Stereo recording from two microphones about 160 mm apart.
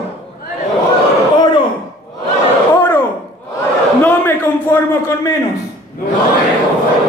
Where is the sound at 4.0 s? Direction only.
15° left (ahead or behind).